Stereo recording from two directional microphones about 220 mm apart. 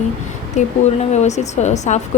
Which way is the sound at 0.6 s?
30° left (ahead or behind).